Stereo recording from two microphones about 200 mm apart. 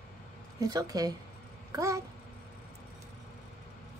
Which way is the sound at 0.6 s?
20° right (ahead or behind).